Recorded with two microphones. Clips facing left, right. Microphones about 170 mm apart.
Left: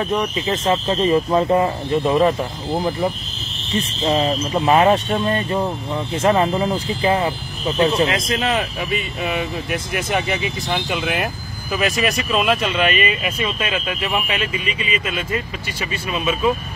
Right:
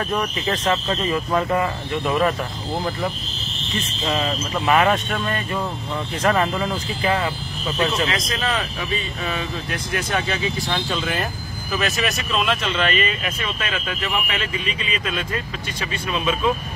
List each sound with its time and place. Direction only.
0.1 s speech: 20° left (ahead or behind)
2.7 s speech: 15° left (ahead or behind)
3.7 s speech: 30° left (ahead or behind); by 16.3 s 10° left (ahead or behind)